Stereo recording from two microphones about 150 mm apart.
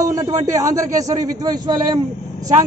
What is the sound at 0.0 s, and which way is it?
Speech, 20° right (ahead or behind).